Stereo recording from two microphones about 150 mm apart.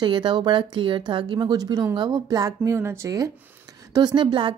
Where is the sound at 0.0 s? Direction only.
30° right (ahead or behind).